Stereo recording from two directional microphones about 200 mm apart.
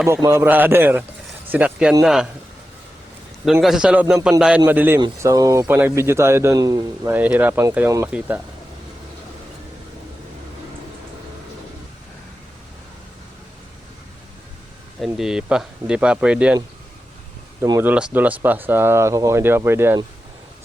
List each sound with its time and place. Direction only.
0.1 s speech: 15° right (ahead or behind)
3.4 s speech: centre (ahead or behind)
15.0 s speech: centre (ahead or behind)
17.6 s speech: 15° right (ahead or behind)